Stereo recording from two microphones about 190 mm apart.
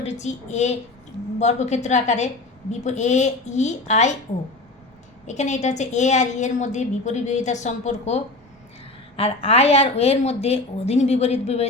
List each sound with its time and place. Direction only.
0.0 s a woman's voice: 35° left (ahead or behind)
5.2 s a woman's voice: 40° left (ahead or behind)